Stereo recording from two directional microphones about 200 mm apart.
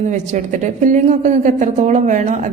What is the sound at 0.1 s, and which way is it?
A woman's voice, 35° right (ahead or behind).